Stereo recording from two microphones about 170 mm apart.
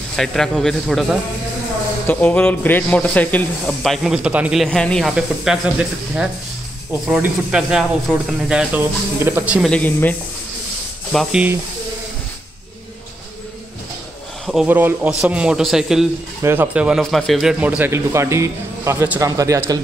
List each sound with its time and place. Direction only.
0.1 s a man's voice: 5° left (ahead or behind)
2.0 s speech: 10° left (ahead or behind); by 4.6 s 5° right (ahead or behind)
4.6 s a man's voice: 5° left (ahead or behind); by 9.6 s 10° right (ahead or behind)
9.6 s a man's voice: 5° left (ahead or behind)
14.4 s a man's voice: 5° right (ahead or behind); by 19.6 s 20° right (ahead or behind)